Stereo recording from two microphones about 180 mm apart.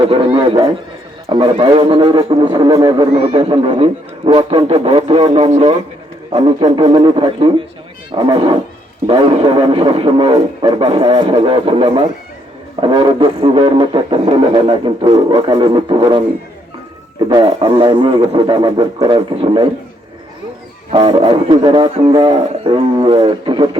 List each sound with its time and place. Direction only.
0.1 s didgeridoo: 30° right (ahead or behind)
3.1 s speech: 30° right (ahead or behind)
6.3 s didgeridoo: 20° right (ahead or behind)
17.2 s didgeridoo: 25° right (ahead or behind)
20.9 s didgeridoo: 30° right (ahead or behind)